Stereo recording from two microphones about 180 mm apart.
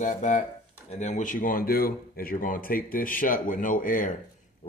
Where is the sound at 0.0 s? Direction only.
45° left (ahead or behind).